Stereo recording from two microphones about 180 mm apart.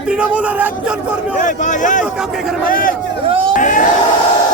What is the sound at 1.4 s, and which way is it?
Speech, 45° left (ahead or behind).